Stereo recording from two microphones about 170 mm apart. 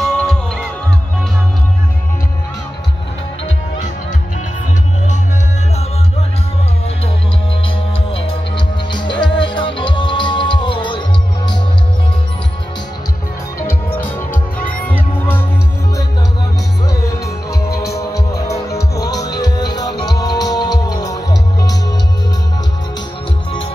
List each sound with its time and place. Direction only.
0.0 s music: 5° left (ahead or behind)
8.1 s music: 30° left (ahead or behind)
13.6 s music: 15° left (ahead or behind)
14.3 s music: 55° left (ahead or behind)
14.9 s music: 10° left (ahead or behind)
16.8 s music: 20° left (ahead or behind)